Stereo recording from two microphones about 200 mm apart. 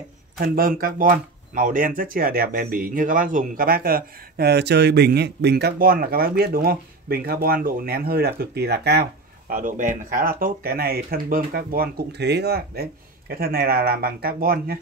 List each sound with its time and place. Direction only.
0.4 s speech: 45° right (ahead or behind)
9.5 s speech: 40° right (ahead or behind)